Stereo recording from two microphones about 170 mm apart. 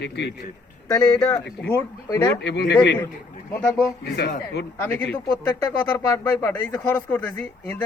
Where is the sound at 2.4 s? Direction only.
80° left.